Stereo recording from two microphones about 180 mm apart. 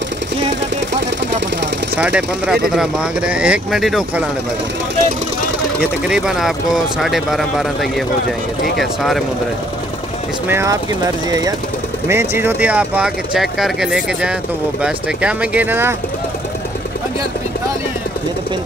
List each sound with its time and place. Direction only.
2.0 s speech: 5° right (ahead or behind)
5.8 s speech: 5° right (ahead or behind)
10.5 s speech: 15° right (ahead or behind)